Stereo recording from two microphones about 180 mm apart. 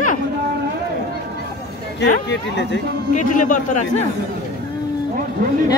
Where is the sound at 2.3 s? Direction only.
70° left (ahead or behind).